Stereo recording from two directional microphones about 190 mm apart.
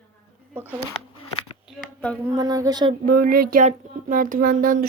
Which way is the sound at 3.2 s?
50° right (ahead or behind).